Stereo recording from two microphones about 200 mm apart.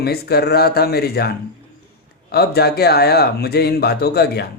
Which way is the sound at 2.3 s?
50° left (ahead or behind).